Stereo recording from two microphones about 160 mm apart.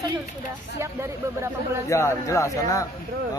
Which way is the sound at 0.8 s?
15° right (ahead or behind).